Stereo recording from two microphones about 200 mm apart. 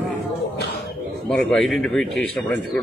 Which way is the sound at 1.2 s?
Centre (ahead or behind).